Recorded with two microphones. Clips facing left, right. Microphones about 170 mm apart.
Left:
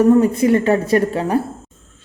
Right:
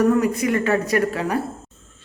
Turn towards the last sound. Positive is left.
turn(degrees=25)  # may be behind; listen again after turning